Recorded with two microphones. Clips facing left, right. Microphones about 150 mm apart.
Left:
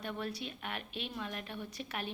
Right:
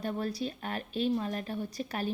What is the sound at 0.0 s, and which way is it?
Speech, 35° right (ahead or behind).